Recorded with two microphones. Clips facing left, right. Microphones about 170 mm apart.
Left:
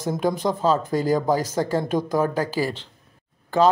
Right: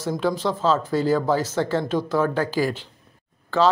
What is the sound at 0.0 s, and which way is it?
Speech, 15° left (ahead or behind).